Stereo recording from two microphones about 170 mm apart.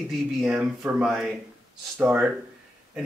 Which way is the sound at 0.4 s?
5° right (ahead or behind).